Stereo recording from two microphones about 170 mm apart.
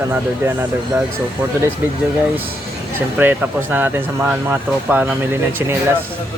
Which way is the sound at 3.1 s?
10° right (ahead or behind).